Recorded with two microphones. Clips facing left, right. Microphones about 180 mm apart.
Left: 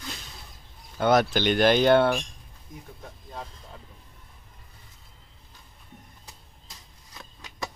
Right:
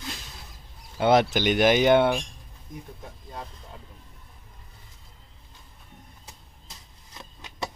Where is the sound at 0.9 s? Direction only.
25° right (ahead or behind).